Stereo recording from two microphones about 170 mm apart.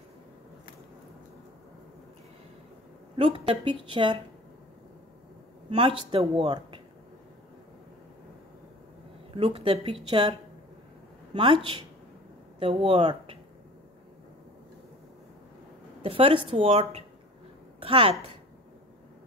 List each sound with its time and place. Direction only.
3.2 s speech: 30° right (ahead or behind)
5.7 s speech: 30° right (ahead or behind)
9.3 s a woman's voice: 30° right (ahead or behind)
11.3 s a woman's voice: 30° right (ahead or behind)
16.0 s speech: 35° right (ahead or behind)
17.7 s a sound: 30° right (ahead or behind)